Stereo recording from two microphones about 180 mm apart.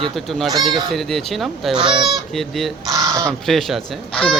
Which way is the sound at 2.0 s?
Centre (ahead or behind).